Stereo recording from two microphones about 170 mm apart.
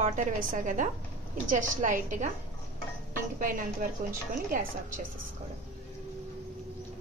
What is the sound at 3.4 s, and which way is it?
A woman's voice, 55° right (ahead or behind).